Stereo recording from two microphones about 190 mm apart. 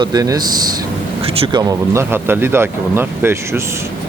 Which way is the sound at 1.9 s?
10° right (ahead or behind).